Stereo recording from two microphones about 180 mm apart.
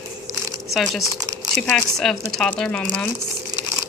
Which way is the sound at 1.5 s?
Centre (ahead or behind).